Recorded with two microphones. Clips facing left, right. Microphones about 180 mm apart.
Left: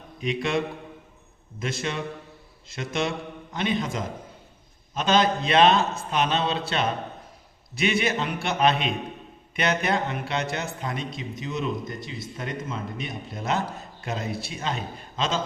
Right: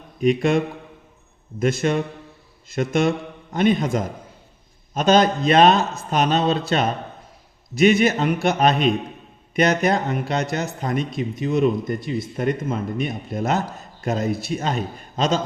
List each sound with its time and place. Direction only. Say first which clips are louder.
0.2 s speech: right 8 dB; 45° right (ahead or behind)